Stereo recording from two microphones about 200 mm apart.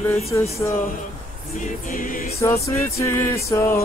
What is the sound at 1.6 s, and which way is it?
Choir, 40° left (ahead or behind).